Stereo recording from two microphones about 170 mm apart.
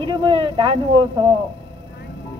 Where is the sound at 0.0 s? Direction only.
30° right (ahead or behind).